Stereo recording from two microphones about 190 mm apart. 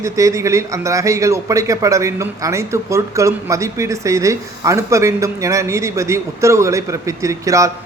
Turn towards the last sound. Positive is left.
turn(degrees=-15)  # may be behind; listen again after turning